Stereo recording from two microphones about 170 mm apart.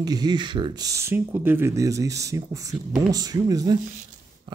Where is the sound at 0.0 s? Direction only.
25° right (ahead or behind).